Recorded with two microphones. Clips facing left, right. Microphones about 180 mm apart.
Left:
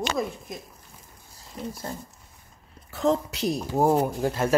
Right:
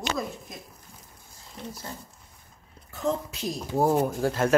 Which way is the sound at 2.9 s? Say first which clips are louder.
Left 5 dB; 80° left.